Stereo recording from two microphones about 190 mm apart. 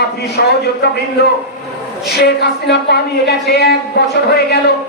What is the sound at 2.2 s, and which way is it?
A woman's voice, 60° left (ahead or behind).